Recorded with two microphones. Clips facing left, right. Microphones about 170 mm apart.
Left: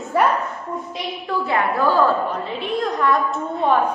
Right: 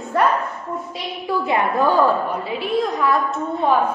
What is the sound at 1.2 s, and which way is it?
A woman's voice, 20° right (ahead or behind).